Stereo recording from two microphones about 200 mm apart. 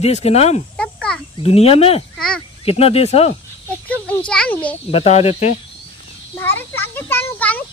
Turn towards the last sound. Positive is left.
turn(degrees=10)  # may be behind; listen again after turning